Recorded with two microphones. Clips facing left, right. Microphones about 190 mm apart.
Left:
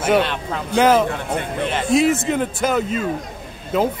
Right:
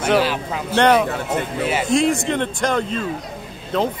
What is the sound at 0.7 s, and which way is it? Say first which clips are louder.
Speech: even; 5° left (ahead or behind).